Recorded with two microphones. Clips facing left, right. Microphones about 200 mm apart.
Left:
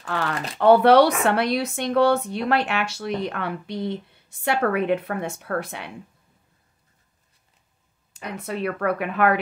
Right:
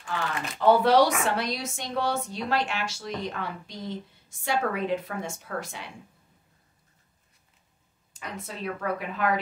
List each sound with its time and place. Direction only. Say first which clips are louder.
0.6 s a woman's voice: left 5 dB; 60° left (ahead or behind)
8.1 s a woman's voice: left 7 dB; 65° left (ahead or behind)